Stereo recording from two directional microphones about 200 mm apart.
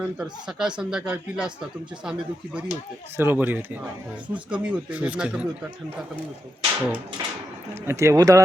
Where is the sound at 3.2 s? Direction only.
10° right (ahead or behind).